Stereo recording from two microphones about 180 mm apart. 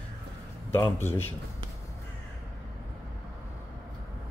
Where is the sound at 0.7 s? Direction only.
10° left (ahead or behind).